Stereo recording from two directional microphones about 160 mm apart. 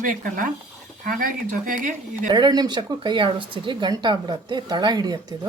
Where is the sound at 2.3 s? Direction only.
30° right (ahead or behind).